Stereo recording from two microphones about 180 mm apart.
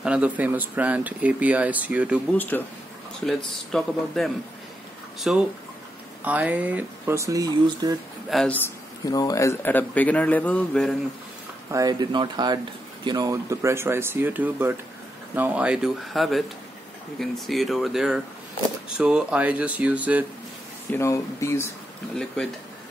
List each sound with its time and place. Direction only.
0.0 s speech: 5° right (ahead or behind)
2.3 s a man's voice: 10° left (ahead or behind); by 8.0 s 20° right (ahead or behind)
8.3 s a man's voice: 5° left (ahead or behind)
9.0 s a man's voice: 20° left (ahead or behind); by 11.0 s 5° left (ahead or behind)
11.7 s speech: 20° right (ahead or behind)
20.9 s a man's voice: 15° left (ahead or behind)